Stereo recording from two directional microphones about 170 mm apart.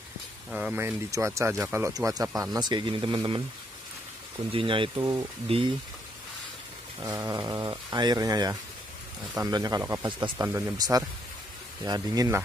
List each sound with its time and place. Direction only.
0.5 s speech: 5° right (ahead or behind)
0.7 s speech: 15° right (ahead or behind)
4.5 s speech: 30° right (ahead or behind)
7.0 s speech: 20° right (ahead or behind)